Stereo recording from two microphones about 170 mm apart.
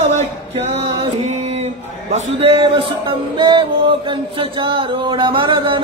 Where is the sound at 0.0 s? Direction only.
40° right (ahead or behind).